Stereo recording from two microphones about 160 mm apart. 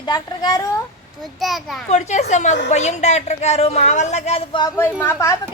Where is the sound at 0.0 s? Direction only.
25° left (ahead or behind).